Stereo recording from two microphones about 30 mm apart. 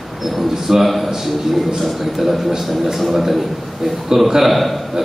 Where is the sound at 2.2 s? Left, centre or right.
Centre.